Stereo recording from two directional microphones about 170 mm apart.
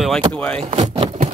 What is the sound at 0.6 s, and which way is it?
Vehicle, 35° right (ahead or behind).